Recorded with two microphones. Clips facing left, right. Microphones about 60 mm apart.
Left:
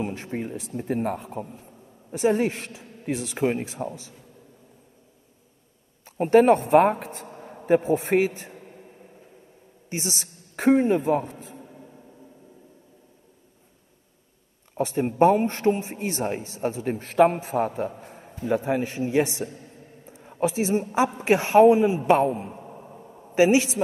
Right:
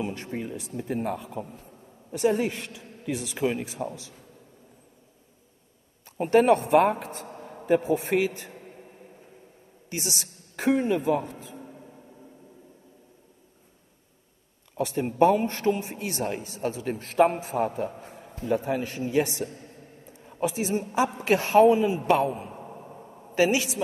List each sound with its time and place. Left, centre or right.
0.0 s a man's voice: left
2.1 s a man's voice: left
3.4 s a man's voice: left
6.0 s a man's voice: left
7.2 s a man's voice: left
9.8 s a woman's voice: left
14.8 s a man's voice: left
17.0 s a man's voice: left
18.0 s a sound: left
18.4 s a man's voice: left
22.6 s a sound: centre
23.3 s a man's voice: left